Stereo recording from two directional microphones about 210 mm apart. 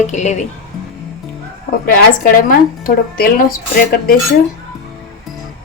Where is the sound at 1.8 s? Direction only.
40° left (ahead or behind).